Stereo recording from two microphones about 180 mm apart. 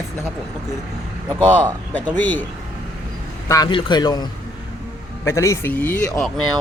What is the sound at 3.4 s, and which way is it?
A man's voice, 20° left (ahead or behind).